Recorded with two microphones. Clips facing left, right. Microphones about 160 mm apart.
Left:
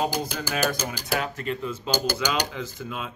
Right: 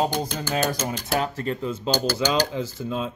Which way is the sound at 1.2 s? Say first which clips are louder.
Right 3 dB; 35° right (ahead or behind).